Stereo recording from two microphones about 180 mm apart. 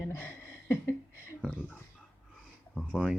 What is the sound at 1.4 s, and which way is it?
Speech, 5° left (ahead or behind).